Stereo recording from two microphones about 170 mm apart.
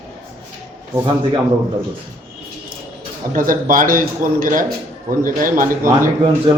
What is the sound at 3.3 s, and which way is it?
A man's voice, 55° right (ahead or behind).